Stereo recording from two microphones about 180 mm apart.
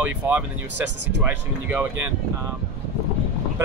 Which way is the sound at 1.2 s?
10° right (ahead or behind).